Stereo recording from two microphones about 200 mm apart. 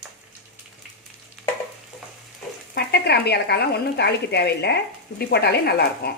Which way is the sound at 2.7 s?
55° left (ahead or behind).